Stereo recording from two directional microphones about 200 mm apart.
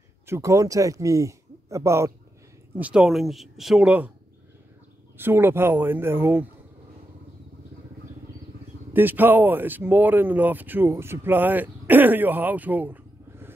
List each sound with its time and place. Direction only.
0.3 s a man's voice: 15° right (ahead or behind)
2.8 s speech: 5° right (ahead or behind)
5.1 s speech: 10° right (ahead or behind)
8.9 s speech: 10° right (ahead or behind)